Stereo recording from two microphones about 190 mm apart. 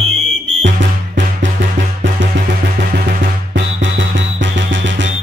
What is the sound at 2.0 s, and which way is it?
Music, 60° right (ahead or behind).